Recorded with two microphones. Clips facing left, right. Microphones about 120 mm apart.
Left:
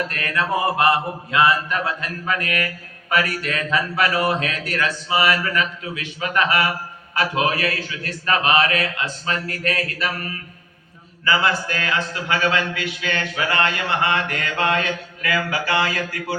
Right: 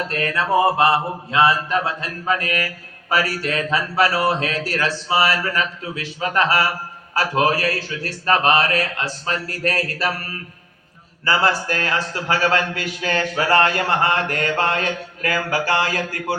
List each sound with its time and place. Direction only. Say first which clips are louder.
0.1 s mantra: right 3 dB; 30° right (ahead or behind)
3.1 s a man's voice: right 1 dB; 30° right (ahead or behind)
11.3 s a man's voice: right 1 dB; 40° right (ahead or behind)